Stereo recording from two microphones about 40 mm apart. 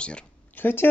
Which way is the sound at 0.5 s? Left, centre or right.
Left.